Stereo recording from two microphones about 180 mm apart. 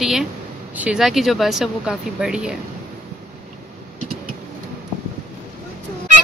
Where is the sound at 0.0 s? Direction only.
Centre (ahead or behind).